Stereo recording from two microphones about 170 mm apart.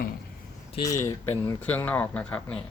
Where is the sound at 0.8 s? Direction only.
15° left (ahead or behind).